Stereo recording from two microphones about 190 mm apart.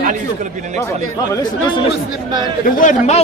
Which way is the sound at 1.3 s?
20° left (ahead or behind).